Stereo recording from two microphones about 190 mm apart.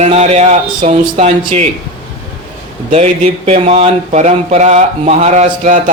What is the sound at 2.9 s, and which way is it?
Speech, 35° right (ahead or behind).